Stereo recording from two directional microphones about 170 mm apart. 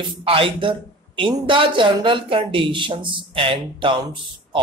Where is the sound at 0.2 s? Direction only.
30° right (ahead or behind).